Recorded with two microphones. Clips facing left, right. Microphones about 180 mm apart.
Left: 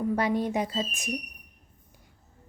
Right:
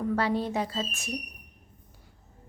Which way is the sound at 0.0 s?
15° left (ahead or behind).